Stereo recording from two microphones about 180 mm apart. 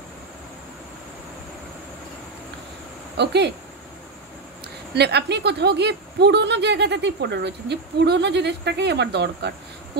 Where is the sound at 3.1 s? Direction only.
70° right (ahead or behind).